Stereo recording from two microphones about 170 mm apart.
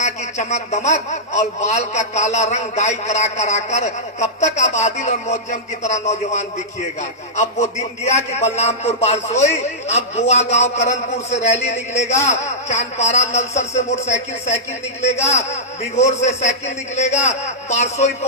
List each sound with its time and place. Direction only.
0.0 s a man's voice: 45° left (ahead or behind)